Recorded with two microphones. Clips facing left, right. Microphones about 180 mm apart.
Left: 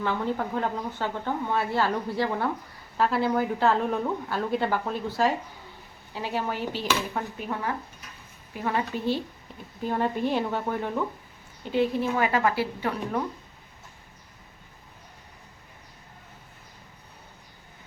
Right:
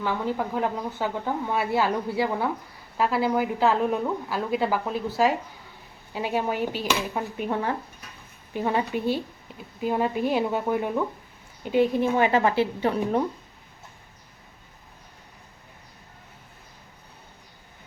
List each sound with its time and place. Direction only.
0.0 s a woman's voice: 5° right (ahead or behind); by 13.2 s 25° right (ahead or behind)